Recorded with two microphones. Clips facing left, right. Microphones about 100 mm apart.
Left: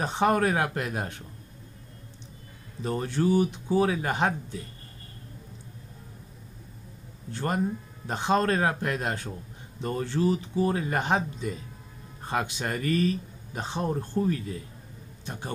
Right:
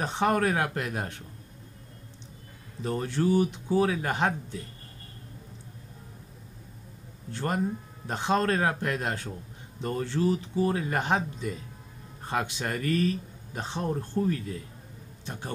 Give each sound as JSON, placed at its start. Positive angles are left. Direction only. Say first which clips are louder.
{"t": 0.0, "sound": "speech", "louder": "left 2 dB", "side_deg": 5}
{"t": 2.8, "sound": "speech", "louder": "left 1 dB", "side_deg": 5}
{"t": 7.3, "sound": "a man's voice", "louder": "left 1 dB", "side_deg": 0}